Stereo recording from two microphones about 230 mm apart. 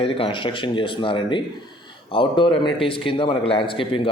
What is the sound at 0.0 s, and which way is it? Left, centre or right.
A man's voice, left.